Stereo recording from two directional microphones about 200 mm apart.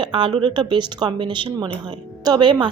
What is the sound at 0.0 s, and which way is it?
A woman's voice, 25° right (ahead or behind).